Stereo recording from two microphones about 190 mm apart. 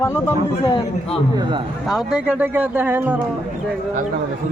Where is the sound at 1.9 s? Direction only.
Centre (ahead or behind).